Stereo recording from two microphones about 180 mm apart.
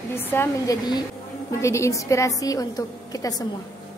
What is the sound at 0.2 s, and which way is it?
A woman's voice, 10° left (ahead or behind).